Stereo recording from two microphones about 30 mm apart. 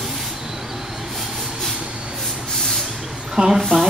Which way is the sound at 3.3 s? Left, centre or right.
Centre.